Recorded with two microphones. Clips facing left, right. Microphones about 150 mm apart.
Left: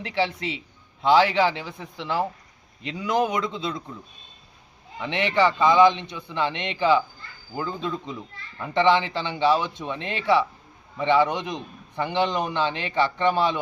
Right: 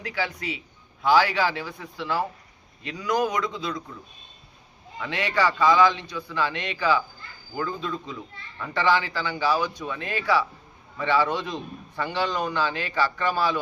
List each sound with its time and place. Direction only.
0.0 s a child's voice: 25° left (ahead or behind)
4.9 s a child's voice: 25° left (ahead or behind)